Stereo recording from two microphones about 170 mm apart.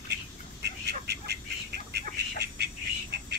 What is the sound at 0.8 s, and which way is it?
Duck, 75° right (ahead or behind).